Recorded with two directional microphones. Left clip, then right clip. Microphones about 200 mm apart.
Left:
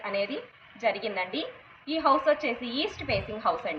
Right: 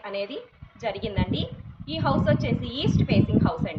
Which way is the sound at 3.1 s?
25° right (ahead or behind).